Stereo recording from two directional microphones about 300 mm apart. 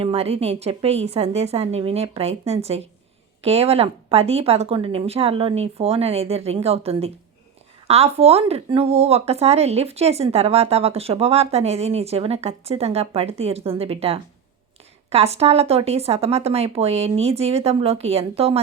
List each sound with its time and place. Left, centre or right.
0.0 s speech: centre